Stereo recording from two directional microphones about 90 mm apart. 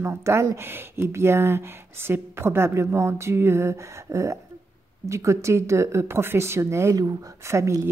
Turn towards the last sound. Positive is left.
turn(degrees=-35)  # may be behind; listen again after turning